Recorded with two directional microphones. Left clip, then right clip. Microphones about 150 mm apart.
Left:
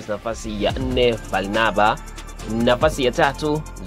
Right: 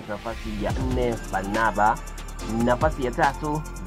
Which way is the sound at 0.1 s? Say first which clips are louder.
Left 6 dB; 40° left (ahead or behind).